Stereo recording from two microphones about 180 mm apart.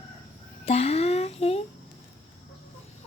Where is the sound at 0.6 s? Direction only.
35° left (ahead or behind).